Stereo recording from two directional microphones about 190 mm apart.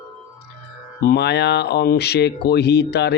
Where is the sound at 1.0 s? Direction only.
60° left (ahead or behind).